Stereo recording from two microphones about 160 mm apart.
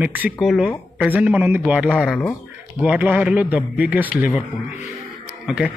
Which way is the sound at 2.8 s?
10° right (ahead or behind).